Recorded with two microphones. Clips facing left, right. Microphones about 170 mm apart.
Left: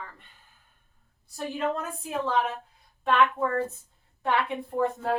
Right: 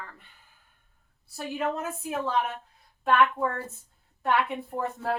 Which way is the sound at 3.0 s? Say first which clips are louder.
Even; 5° right (ahead or behind).